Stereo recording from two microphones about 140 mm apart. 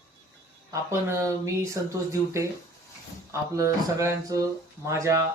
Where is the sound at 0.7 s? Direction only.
20° right (ahead or behind).